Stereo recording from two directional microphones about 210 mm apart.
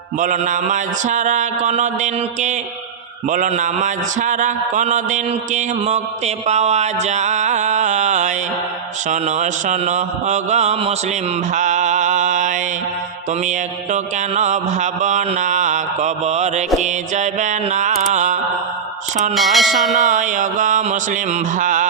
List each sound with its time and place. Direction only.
0.2 s a man's voice: 35° right (ahead or behind)
11.5 s mantra: 35° right (ahead or behind)
13.4 s a man's voice: 35° right (ahead or behind)
16.8 s mantra: 35° right (ahead or behind)
19.3 s speech: centre (ahead or behind)
20.1 s a man's voice: 35° right (ahead or behind)